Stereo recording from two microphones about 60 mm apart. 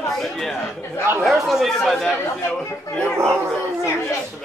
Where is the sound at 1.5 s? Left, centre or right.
Centre.